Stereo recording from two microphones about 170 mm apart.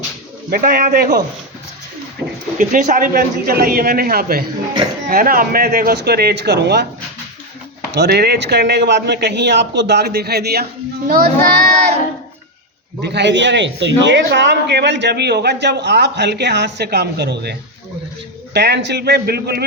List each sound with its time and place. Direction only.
0.5 s a man's voice: 55° right (ahead or behind)
2.2 s a sound: 5° right (ahead or behind)
2.6 s a man's voice: 50° right (ahead or behind); by 6.8 s 80° right
7.9 s a man's voice: 80° right; by 11.6 s 60° right (ahead or behind)
13.0 s a man's voice: 90° right; by 19.6 s 70° right (ahead or behind)